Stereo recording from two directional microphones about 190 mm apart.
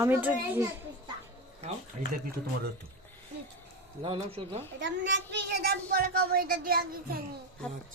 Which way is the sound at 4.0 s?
30° right (ahead or behind).